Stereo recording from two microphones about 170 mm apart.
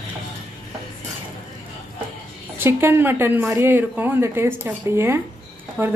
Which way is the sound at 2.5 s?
15° right (ahead or behind).